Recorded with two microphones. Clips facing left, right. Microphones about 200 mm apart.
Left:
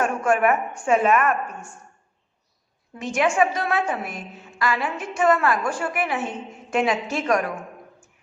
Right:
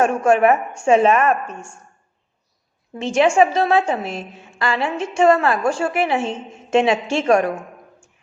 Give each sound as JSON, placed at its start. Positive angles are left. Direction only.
{"t": 0.0, "sound": "a woman's voice", "side_deg": -25}
{"t": 2.9, "sound": "a woman's voice", "side_deg": -25}